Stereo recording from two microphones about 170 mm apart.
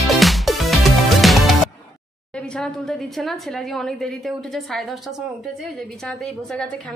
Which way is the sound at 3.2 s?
Centre (ahead or behind).